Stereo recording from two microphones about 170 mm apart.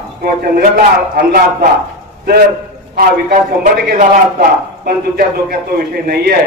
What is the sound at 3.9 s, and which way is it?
A man's voice, 60° right (ahead or behind).